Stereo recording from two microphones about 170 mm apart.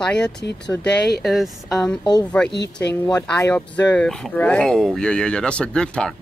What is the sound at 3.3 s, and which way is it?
Speech, 10° left (ahead or behind).